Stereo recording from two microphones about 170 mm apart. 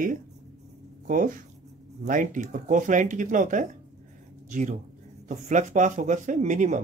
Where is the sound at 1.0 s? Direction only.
50° right (ahead or behind).